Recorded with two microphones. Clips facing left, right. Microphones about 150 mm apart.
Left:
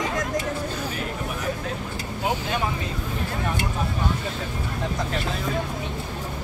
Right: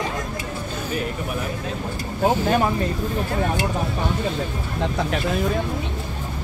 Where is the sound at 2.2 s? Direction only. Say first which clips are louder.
Right 8 dB; 40° right (ahead or behind).